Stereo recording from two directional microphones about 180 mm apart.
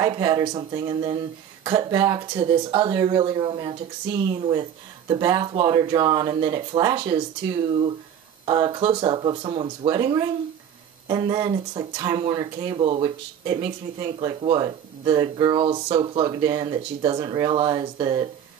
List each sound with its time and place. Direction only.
0.0 s speech: 25° right (ahead or behind)
8.5 s speech: 25° right (ahead or behind)